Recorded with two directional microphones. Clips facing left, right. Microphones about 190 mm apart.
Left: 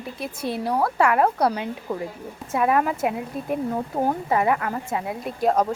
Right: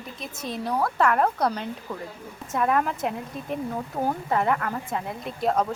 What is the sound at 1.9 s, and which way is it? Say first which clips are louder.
Speech: left 9 dB; 20° left (ahead or behind).